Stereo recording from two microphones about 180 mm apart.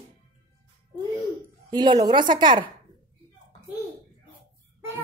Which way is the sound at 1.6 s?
25° right (ahead or behind).